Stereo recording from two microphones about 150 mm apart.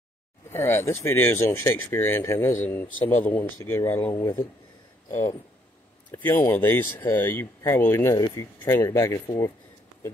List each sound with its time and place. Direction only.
0.5 s speech: 15° left (ahead or behind)
6.1 s speech: 15° left (ahead or behind)